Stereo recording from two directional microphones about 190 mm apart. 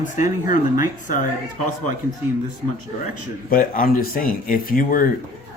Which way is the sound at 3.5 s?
50° left (ahead or behind).